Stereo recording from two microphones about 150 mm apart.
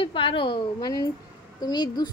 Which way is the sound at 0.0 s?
35° left (ahead or behind).